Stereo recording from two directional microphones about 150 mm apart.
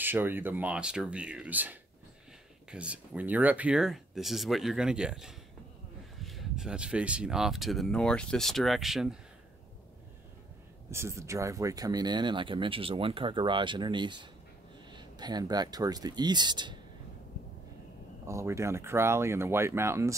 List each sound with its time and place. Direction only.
0.0 s speech: 15° right (ahead or behind)
10.9 s speech: 20° right (ahead or behind)
18.2 s speech: 20° right (ahead or behind)